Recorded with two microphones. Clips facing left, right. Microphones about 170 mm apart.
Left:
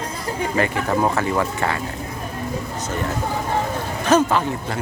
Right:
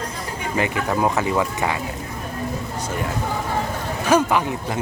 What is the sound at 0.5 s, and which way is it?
Speech, 15° right (ahead or behind).